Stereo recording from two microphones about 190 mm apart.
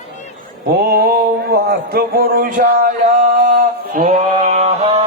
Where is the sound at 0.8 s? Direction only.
55° right (ahead or behind).